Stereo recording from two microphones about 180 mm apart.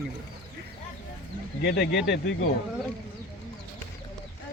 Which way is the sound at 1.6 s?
60° left (ahead or behind).